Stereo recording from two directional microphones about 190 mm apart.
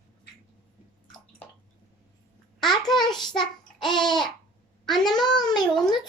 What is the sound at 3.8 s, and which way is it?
Babbling, centre (ahead or behind).